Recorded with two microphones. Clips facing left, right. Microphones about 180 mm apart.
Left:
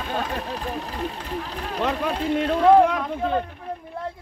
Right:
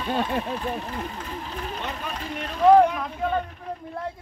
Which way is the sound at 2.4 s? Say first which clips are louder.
Even; 75° left (ahead or behind).